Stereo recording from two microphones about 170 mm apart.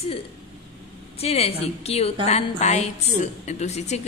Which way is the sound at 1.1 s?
35° left (ahead or behind).